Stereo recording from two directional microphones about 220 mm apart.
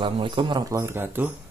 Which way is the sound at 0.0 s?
20° right (ahead or behind).